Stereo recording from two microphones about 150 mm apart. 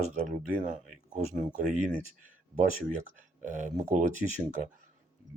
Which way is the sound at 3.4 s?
55° right (ahead or behind).